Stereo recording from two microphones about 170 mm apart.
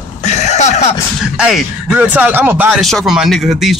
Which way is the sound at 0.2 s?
40° left (ahead or behind).